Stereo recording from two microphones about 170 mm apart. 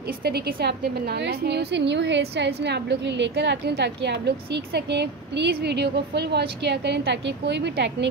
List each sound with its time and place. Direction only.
0.2 s a woman's voice: 65° right (ahead or behind)
6.6 s a woman's voice: 90° right